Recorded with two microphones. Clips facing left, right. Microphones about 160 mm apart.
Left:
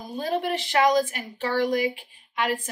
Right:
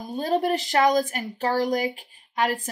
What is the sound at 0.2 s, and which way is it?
Speech, 40° right (ahead or behind).